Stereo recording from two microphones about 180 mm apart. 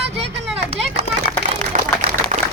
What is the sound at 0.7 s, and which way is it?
Children playing, 30° right (ahead or behind).